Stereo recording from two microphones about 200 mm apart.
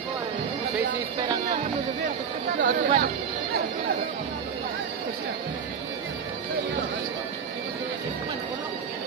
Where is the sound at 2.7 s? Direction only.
45° right (ahead or behind).